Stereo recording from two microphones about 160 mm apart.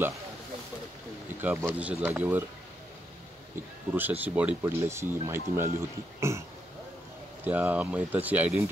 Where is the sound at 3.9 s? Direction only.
10° right (ahead or behind).